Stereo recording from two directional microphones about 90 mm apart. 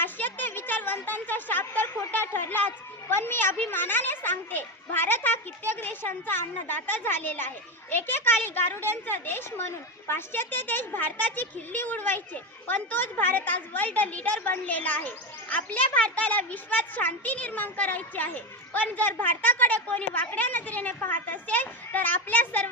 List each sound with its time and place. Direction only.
0.0 s a woman's voice: 20° left (ahead or behind)